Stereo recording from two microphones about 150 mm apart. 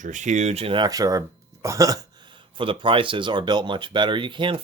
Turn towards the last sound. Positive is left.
turn(degrees=-35)  # may be behind; listen again after turning